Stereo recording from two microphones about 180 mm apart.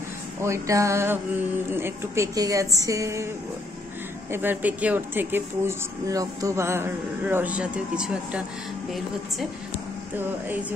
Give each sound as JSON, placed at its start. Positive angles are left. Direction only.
{"t": 0.4, "sound": "speech", "side_deg": -15}
{"t": 4.3, "sound": "speech", "side_deg": -10}